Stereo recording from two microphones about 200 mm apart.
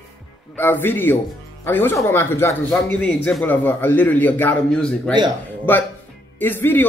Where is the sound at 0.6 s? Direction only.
10° left (ahead or behind).